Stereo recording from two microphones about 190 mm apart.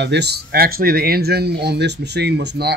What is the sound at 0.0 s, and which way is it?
Speech, 65° right (ahead or behind).